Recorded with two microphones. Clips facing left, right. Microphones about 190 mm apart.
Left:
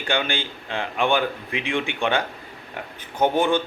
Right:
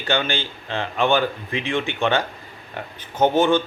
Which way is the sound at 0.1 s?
10° left (ahead or behind).